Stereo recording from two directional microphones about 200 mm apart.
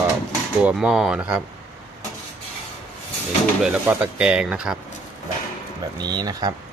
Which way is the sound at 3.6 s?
5° right (ahead or behind).